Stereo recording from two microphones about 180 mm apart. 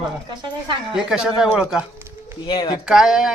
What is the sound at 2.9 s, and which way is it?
Speech, 5° right (ahead or behind).